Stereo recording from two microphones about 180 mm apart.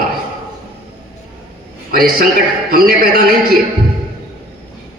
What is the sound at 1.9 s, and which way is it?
A man's voice, 55° right (ahead or behind).